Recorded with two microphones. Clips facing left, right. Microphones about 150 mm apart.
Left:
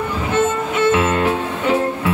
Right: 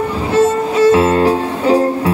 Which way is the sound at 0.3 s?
35° right (ahead or behind).